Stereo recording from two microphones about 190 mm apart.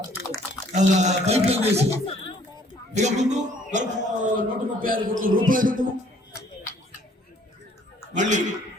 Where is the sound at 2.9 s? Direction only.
40° right (ahead or behind).